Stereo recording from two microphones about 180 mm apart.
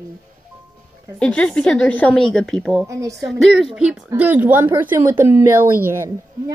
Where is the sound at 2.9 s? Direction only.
15° right (ahead or behind).